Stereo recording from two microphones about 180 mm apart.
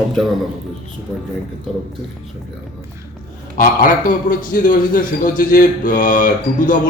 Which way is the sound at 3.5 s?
50° left (ahead or behind).